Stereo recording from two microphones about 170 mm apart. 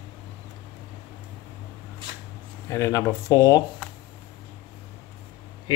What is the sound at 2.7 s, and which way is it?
Speech, 15° left (ahead or behind).